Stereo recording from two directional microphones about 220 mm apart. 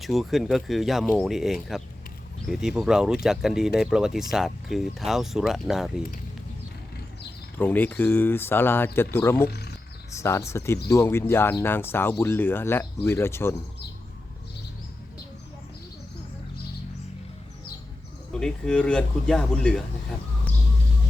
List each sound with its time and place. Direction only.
0.0 s speech: centre (ahead or behind)
7.6 s speech: 10° left (ahead or behind)
9.5 s a sound: 50° left (ahead or behind)
10.2 s speech: 10° left (ahead or behind)
18.3 s speech: 5° left (ahead or behind)